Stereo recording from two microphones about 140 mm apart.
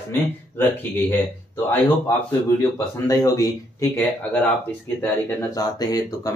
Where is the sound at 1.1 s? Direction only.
15° left (ahead or behind).